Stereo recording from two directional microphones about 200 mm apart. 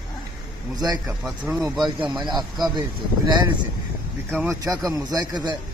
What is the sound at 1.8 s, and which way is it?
Speech, 20° right (ahead or behind).